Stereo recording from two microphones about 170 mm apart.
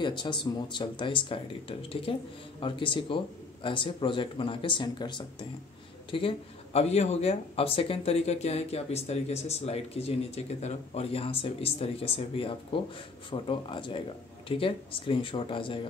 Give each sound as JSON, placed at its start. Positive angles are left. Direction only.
{"t": 0.0, "sound": "speech", "side_deg": 25}